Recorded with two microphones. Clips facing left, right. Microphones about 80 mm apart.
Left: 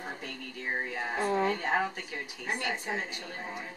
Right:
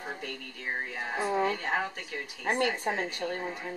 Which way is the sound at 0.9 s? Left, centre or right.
Centre.